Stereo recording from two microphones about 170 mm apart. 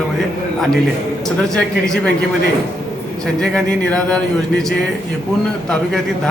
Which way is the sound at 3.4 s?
5° left (ahead or behind).